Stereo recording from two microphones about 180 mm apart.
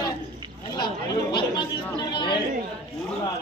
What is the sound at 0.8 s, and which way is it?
Speech, 25° left (ahead or behind).